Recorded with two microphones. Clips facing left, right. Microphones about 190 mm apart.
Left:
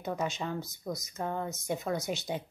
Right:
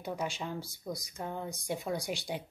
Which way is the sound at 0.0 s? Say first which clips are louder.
Left 3 dB; 10° right (ahead or behind).